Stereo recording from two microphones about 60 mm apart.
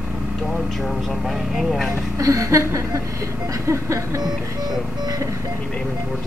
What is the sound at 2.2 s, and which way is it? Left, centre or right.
Vehicle, right.